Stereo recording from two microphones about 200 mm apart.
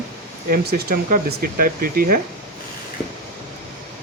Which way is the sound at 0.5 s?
50° right (ahead or behind).